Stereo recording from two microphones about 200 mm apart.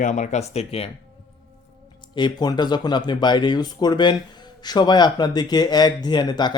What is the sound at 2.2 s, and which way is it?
Speech, 20° left (ahead or behind).